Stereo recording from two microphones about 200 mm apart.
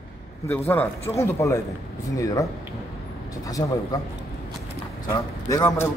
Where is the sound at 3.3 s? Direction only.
15° left (ahead or behind).